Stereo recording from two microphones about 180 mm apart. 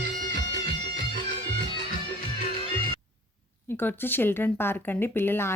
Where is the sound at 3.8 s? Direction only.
10° left (ahead or behind).